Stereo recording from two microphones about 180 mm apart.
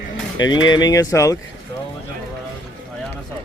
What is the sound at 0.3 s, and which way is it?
Speech, 25° left (ahead or behind).